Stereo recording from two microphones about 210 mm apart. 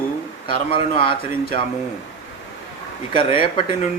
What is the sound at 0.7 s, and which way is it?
Speech, 25° left (ahead or behind).